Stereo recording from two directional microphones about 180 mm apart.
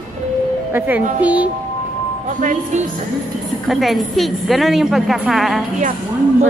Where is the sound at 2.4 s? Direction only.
45° right (ahead or behind).